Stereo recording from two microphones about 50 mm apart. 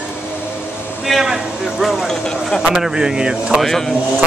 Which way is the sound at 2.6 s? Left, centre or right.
Centre.